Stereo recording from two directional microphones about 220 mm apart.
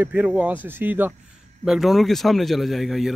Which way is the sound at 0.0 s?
5° right (ahead or behind).